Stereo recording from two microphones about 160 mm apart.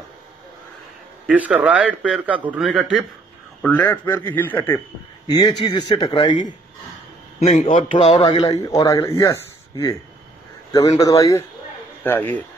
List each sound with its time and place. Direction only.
1.2 s a man's voice: 10° right (ahead or behind)
3.6 s speech: 10° left (ahead or behind)
5.3 s speech: 25° left (ahead or behind)
7.3 s a man's voice: 50° left (ahead or behind)
8.5 s speech: 25° left (ahead or behind)